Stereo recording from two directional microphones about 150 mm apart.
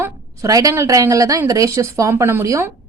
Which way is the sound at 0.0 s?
20° right (ahead or behind).